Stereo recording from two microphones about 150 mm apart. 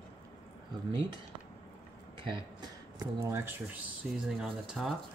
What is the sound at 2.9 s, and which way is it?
Speech, 20° right (ahead or behind).